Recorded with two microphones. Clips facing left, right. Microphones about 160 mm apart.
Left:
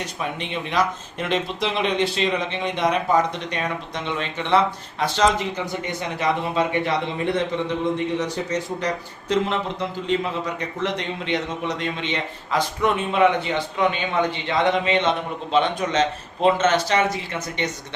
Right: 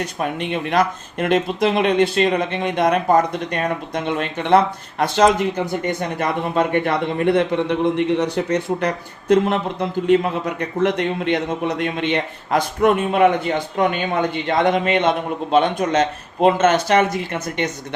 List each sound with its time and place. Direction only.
0.2 s speech: 50° right (ahead or behind)